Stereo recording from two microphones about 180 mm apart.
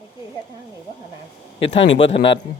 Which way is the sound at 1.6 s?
30° left (ahead or behind).